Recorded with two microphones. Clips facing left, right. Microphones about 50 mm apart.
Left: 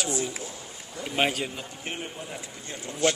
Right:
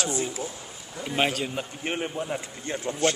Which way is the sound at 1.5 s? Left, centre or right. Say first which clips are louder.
Right 5 dB; right.